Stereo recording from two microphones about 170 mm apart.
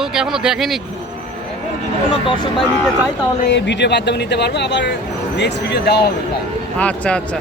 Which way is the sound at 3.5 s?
90° left.